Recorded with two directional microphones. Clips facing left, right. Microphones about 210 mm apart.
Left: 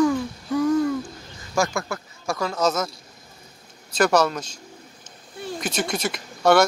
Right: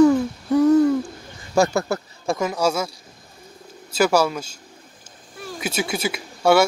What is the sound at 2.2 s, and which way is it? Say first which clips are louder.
Speech: right 2 dB; 20° right (ahead or behind).